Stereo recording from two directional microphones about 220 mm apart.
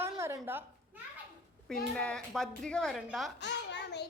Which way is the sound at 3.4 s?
50° left (ahead or behind).